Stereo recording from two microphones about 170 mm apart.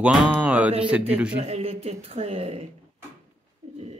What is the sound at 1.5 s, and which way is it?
Speech, 40° right (ahead or behind).